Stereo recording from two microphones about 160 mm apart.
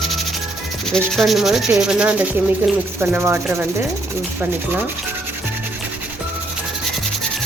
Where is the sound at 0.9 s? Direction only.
Centre (ahead or behind).